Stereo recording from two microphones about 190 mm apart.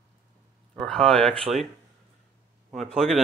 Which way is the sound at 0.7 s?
5° left (ahead or behind).